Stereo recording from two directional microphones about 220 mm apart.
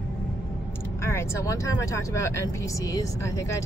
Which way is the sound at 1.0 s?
15° left (ahead or behind).